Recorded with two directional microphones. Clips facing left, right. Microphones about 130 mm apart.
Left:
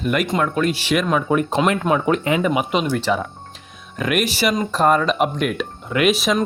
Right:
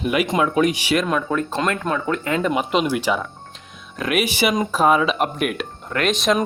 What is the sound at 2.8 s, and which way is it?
Speech, 10° right (ahead or behind).